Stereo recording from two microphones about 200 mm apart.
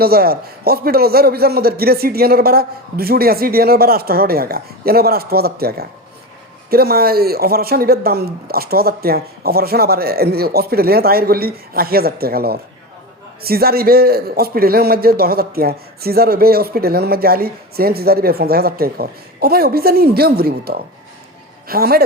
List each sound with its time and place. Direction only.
0.0 s a man's voice: 50° right (ahead or behind)